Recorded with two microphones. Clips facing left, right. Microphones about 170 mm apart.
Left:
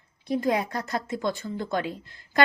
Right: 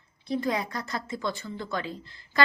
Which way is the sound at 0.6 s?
50° left (ahead or behind).